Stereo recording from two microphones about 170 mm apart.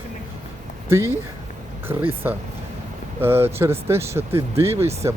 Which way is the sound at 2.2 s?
10° right (ahead or behind).